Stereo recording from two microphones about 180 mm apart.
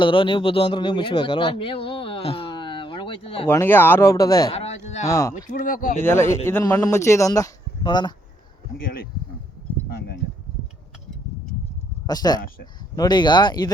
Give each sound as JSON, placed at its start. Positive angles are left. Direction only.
{"t": 0.0, "sound": "speech", "side_deg": 30}
{"t": 3.4, "sound": "speech", "side_deg": 15}
{"t": 4.5, "sound": "a sound", "side_deg": 35}
{"t": 5.0, "sound": "speech", "side_deg": 15}
{"t": 5.5, "sound": "speech", "side_deg": 50}
{"t": 6.0, "sound": "speech", "side_deg": 10}
{"t": 8.8, "sound": "speech", "side_deg": 55}
{"t": 12.0, "sound": "speech", "side_deg": 20}